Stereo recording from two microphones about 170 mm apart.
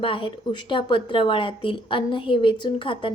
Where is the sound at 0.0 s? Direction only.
30° left (ahead or behind).